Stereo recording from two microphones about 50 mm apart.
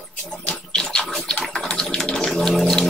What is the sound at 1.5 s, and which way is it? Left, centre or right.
Water, centre.